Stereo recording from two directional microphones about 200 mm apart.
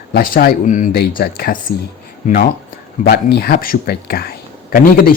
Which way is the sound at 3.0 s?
55° left (ahead or behind).